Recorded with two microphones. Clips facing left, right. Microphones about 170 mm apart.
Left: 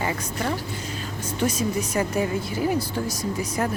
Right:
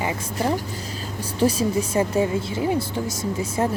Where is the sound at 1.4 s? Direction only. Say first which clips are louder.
Right 4 dB; 30° right (ahead or behind).